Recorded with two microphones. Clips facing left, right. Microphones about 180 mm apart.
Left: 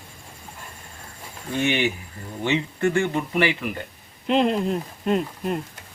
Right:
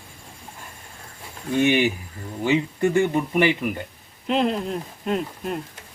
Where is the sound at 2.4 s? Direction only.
15° right (ahead or behind).